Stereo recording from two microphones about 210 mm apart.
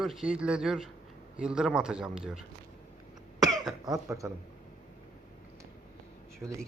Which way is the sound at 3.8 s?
15° right (ahead or behind).